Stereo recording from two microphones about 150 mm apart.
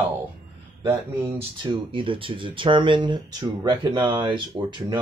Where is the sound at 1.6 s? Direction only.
35° right (ahead or behind).